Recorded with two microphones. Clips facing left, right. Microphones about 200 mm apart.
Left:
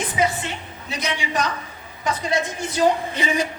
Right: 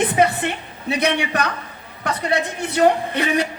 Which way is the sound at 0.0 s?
60° right (ahead or behind).